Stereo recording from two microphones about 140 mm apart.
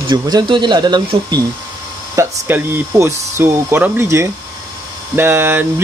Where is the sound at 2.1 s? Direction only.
15° right (ahead or behind).